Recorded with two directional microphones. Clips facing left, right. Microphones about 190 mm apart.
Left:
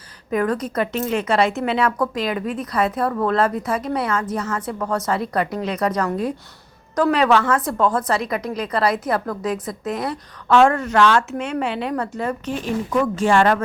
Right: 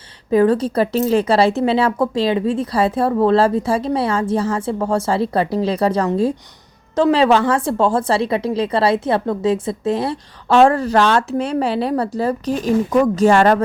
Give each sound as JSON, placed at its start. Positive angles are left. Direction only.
{"t": 0.3, "sound": "a woman's voice", "side_deg": -30}